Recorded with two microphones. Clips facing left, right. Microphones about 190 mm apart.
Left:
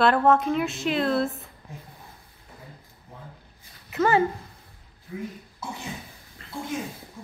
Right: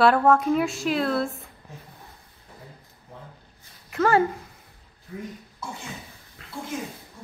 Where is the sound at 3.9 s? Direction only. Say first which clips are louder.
Right 1 dB; 5° left (ahead or behind).